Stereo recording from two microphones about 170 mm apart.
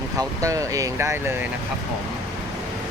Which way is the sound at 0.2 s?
20° right (ahead or behind).